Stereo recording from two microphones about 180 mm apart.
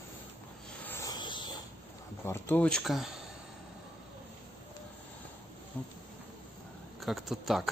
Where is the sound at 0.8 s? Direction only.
15° left (ahead or behind).